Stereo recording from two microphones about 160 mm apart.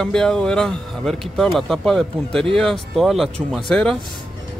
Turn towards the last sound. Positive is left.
turn(degrees=5)  # may be behind; listen again after turning